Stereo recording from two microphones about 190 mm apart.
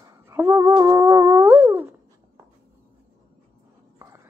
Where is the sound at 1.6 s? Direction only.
10° right (ahead or behind).